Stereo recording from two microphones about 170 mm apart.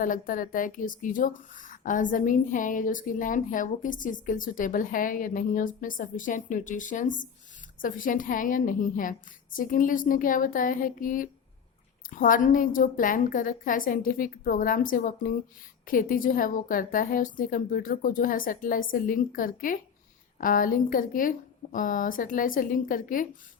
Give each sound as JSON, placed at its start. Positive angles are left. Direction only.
{"t": 0.0, "sound": "speech", "side_deg": 50}